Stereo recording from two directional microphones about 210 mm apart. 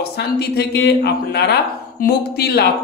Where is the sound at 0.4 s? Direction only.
50° left (ahead or behind).